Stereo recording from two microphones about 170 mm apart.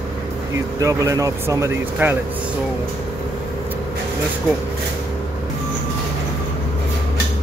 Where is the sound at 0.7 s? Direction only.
20° right (ahead or behind).